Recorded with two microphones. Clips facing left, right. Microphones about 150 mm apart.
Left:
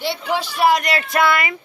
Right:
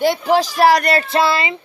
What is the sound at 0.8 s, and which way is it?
Music, 35° right (ahead or behind).